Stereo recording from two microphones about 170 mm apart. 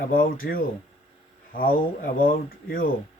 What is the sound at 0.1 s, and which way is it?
Speech, 55° left (ahead or behind).